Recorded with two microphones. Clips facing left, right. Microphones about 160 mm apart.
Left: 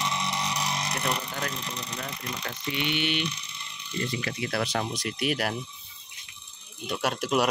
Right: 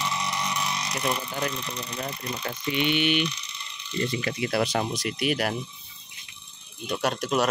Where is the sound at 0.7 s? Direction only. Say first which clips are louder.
Even; 50° left (ahead or behind).